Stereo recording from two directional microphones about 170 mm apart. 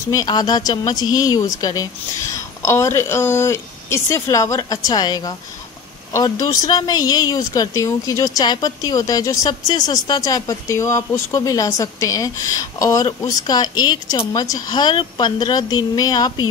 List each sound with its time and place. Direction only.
0.1 s a woman's voice: 20° left (ahead or behind)